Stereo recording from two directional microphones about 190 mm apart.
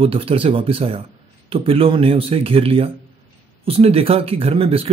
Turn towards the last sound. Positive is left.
turn(degrees=-30)  # may be behind; listen again after turning